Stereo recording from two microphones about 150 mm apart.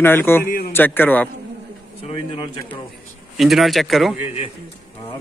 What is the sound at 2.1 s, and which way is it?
Speech, 35° left (ahead or behind).